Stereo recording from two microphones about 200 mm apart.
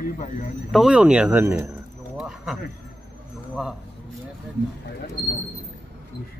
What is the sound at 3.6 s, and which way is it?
Speech, centre (ahead or behind).